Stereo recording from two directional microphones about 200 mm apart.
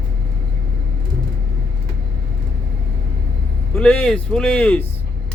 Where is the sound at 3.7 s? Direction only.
5° left (ahead or behind).